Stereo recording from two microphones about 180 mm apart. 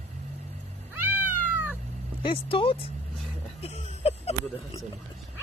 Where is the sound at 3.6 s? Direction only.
35° left (ahead or behind).